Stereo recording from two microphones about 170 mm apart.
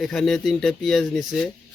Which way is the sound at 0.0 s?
Centre (ahead or behind).